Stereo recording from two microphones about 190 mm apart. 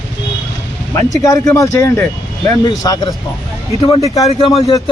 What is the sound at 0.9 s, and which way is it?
Speech, 15° left (ahead or behind).